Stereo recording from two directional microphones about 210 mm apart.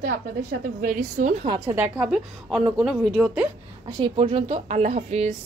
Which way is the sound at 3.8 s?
20° right (ahead or behind).